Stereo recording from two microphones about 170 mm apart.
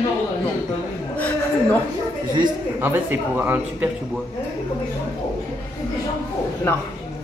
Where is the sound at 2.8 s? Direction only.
10° right (ahead or behind).